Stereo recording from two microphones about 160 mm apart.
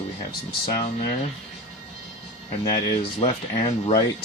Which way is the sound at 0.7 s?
40° left (ahead or behind).